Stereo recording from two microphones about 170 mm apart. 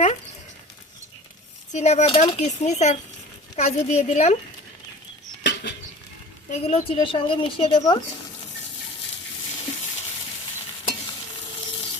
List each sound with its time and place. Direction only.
1.7 s a woman's voice: 40° left (ahead or behind)
5.4 s a sound: 90° left
6.5 s a woman's voice: 35° left (ahead or behind)